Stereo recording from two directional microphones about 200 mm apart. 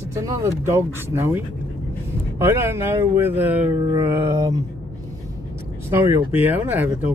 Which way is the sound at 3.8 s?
15° right (ahead or behind).